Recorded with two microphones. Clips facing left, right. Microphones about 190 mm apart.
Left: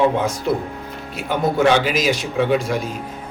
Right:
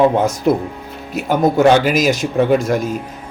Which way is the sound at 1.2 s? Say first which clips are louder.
Right 5 dB; 45° right (ahead or behind).